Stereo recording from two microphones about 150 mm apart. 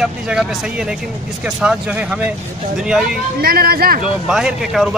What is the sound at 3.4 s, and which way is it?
Speech, 85° right.